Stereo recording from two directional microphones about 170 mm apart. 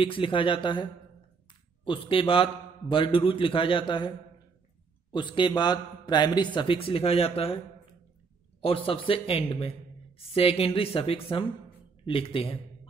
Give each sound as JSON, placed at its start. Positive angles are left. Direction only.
{"t": 0.0, "sound": "a man's voice", "side_deg": 30}
{"t": 1.9, "sound": "a man's voice", "side_deg": 30}
{"t": 5.1, "sound": "a man's voice", "side_deg": 30}